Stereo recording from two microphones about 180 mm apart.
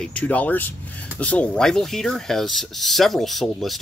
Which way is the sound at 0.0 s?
5° left (ahead or behind).